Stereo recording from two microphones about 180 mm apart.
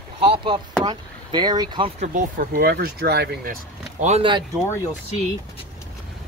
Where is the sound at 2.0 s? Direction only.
50° right (ahead or behind).